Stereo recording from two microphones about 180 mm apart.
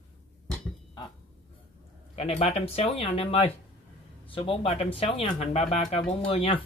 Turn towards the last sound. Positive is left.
turn(degrees=30)  # may be behind; listen again after turning